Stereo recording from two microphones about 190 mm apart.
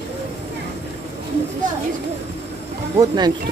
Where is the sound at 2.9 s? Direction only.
20° right (ahead or behind).